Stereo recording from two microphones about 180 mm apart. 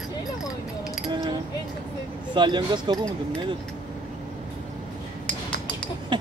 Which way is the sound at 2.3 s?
25° right (ahead or behind).